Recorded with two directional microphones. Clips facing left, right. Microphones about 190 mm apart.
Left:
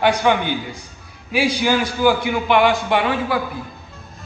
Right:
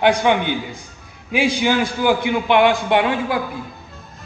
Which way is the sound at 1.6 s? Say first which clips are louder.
Left 2 dB; 20° right (ahead or behind).